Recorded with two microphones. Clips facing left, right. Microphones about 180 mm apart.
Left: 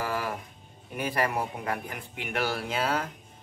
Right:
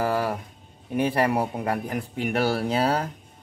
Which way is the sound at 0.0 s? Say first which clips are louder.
Right 7 dB; 35° right (ahead or behind).